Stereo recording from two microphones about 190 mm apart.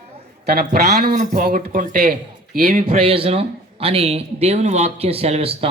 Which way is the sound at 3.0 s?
30° right (ahead or behind).